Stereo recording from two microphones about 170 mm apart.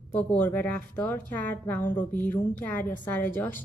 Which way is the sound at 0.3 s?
10° left (ahead or behind).